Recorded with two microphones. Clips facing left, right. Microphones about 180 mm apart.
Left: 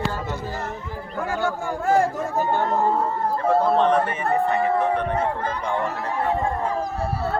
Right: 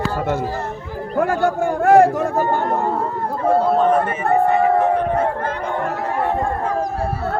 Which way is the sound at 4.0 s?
50° right (ahead or behind).